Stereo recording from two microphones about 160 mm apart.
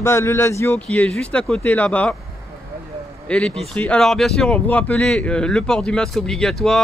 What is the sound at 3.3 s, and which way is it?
Speech, 5° left (ahead or behind).